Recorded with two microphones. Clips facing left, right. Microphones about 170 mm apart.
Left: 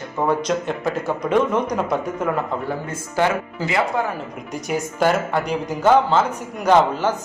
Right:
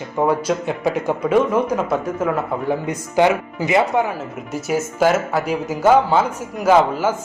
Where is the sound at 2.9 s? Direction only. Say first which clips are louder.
Right 4 dB; 15° right (ahead or behind).